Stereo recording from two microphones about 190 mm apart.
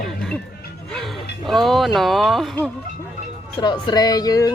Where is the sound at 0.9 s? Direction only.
Centre (ahead or behind).